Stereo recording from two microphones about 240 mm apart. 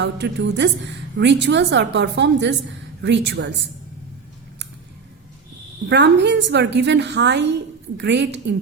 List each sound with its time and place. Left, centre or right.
0.0 s a woman's voice: right
5.9 s a woman's voice: right